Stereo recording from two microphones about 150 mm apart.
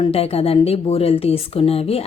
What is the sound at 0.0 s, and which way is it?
Speech, 40° left (ahead or behind).